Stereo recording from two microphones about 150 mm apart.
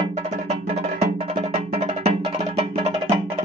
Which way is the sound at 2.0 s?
45° right (ahead or behind).